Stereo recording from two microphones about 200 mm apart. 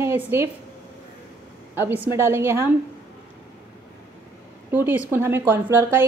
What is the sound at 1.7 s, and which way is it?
Speech, 10° right (ahead or behind).